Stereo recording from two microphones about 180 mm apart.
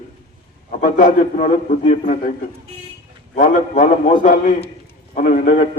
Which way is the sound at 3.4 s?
45° left (ahead or behind).